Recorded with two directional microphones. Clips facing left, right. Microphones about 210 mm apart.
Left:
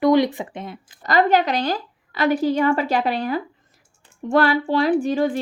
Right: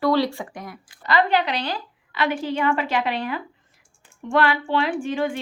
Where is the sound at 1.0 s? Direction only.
45° left (ahead or behind).